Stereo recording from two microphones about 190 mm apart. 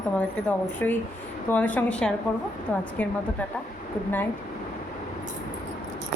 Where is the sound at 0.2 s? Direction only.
10° left (ahead or behind).